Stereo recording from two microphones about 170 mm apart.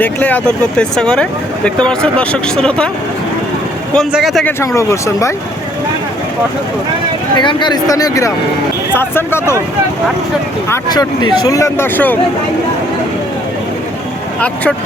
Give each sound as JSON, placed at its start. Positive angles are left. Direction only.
{"t": 0.0, "sound": "speech", "side_deg": 10}
{"t": 3.9, "sound": "speech", "side_deg": 0}
{"t": 4.4, "sound": "speech", "side_deg": 15}
{"t": 7.3, "sound": "speech", "side_deg": 25}
{"t": 10.7, "sound": "speech", "side_deg": 25}
{"t": 14.4, "sound": "speech", "side_deg": 10}